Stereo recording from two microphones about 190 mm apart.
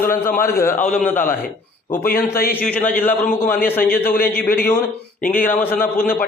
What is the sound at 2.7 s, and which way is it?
A man's voice, 10° left (ahead or behind).